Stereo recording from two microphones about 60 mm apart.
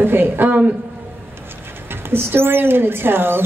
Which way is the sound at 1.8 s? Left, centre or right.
Right.